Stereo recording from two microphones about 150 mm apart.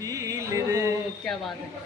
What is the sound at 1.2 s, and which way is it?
Speech, centre (ahead or behind).